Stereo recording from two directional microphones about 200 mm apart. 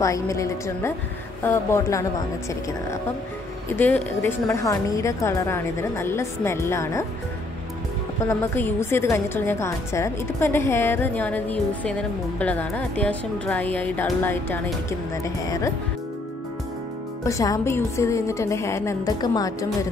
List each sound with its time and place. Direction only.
0.0 s a woman's voice: 15° left (ahead or behind)
3.6 s a woman's voice: 10° left (ahead or behind)
8.3 s a woman's voice: 10° left (ahead or behind)
17.2 s a woman's voice: 15° left (ahead or behind)